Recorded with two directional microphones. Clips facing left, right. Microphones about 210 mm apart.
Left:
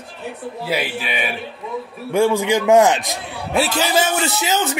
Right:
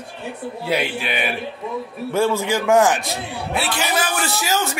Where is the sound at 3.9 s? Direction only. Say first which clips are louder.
Left 4 dB; 25° left (ahead or behind).